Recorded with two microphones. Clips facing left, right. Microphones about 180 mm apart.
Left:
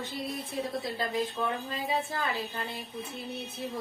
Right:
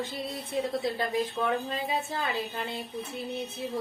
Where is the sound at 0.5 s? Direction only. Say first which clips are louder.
Right 5 dB; 20° right (ahead or behind).